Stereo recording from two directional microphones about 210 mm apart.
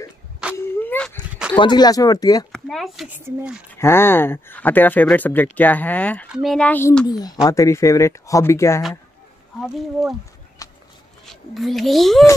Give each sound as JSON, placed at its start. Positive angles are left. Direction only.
{"t": 0.4, "sound": "a sound", "side_deg": -5}
{"t": 0.7, "sound": "dog", "side_deg": 5}
{"t": 1.6, "sound": "speech", "side_deg": 20}
{"t": 2.5, "sound": "speech", "side_deg": 0}
{"t": 3.7, "sound": "speech", "side_deg": 10}
{"t": 9.6, "sound": "speech", "side_deg": 0}
{"t": 10.6, "sound": "run", "side_deg": 15}
{"t": 11.2, "sound": "speech", "side_deg": 0}